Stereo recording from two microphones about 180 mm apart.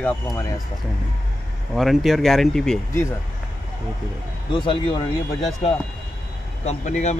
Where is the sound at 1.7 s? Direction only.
Centre (ahead or behind).